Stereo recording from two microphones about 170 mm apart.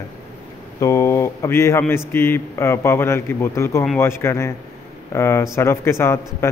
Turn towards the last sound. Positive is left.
turn(degrees=15)  # may be behind; listen again after turning